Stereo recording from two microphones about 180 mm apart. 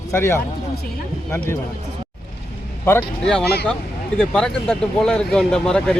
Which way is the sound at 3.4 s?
60° left (ahead or behind).